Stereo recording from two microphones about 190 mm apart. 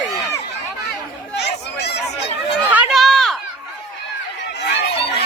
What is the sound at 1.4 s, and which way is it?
Chatter, 60° left (ahead or behind).